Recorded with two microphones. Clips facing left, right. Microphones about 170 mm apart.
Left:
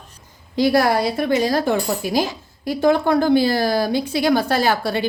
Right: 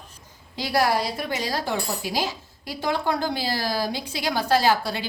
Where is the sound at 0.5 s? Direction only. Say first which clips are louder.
Left 6 dB; 55° left (ahead or behind).